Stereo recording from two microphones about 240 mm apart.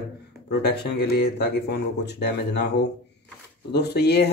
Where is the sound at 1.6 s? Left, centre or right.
Left.